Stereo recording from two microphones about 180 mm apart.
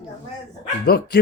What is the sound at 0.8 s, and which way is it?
Speech, 60° left (ahead or behind).